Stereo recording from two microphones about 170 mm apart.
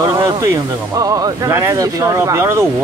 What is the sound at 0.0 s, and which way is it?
Speech, 20° right (ahead or behind).